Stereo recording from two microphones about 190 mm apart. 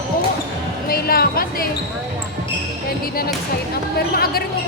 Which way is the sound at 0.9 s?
50° left (ahead or behind).